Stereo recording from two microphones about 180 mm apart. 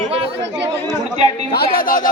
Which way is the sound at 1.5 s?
55° left (ahead or behind).